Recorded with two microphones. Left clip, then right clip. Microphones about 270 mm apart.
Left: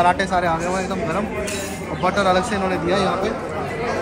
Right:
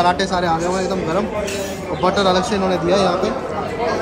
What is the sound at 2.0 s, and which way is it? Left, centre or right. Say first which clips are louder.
Speech: right 2 dB; centre.